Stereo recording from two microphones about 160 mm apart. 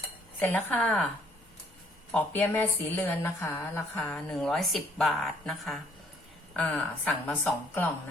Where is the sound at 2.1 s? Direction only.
10° left (ahead or behind).